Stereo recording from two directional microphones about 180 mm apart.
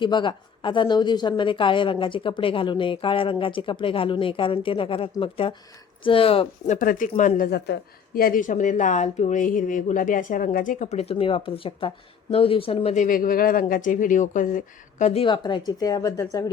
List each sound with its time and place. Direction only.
0.0 s speech: 25° left (ahead or behind)
6.7 s a woman's voice: 50° left (ahead or behind); by 16.5 s 20° left (ahead or behind)